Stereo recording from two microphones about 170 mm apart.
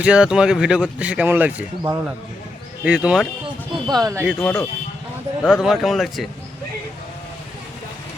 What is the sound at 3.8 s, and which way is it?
Speech, 20° right (ahead or behind).